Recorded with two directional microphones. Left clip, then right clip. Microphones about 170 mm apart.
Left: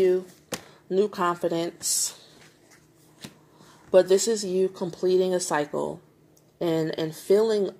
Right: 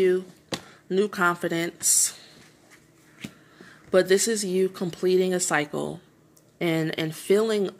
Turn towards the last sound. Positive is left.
turn(degrees=-40)  # may be behind; listen again after turning